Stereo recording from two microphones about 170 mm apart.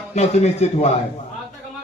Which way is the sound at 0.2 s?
40° left (ahead or behind).